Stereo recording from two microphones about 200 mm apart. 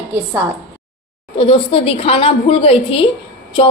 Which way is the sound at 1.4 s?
30° left (ahead or behind).